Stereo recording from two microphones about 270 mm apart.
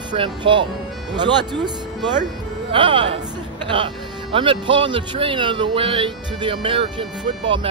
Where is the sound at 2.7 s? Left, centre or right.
Centre.